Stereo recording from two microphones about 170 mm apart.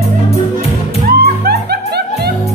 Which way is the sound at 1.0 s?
65° right (ahead or behind).